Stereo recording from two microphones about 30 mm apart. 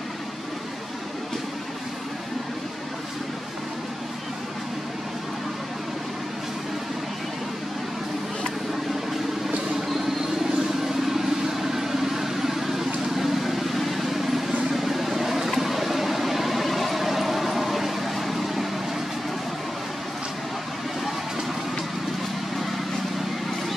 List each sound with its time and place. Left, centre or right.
10.8 s vehicle: centre